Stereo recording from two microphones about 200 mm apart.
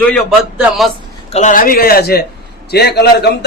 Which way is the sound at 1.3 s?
35° left (ahead or behind).